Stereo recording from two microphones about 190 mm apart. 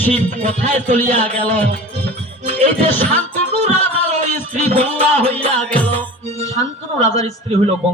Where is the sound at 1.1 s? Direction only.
10° left (ahead or behind).